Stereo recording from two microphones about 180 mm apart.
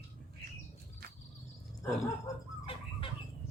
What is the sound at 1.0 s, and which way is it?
Insect, 60° right (ahead or behind).